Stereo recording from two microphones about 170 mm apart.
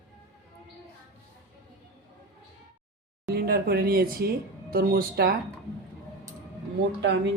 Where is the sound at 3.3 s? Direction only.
70° right (ahead or behind).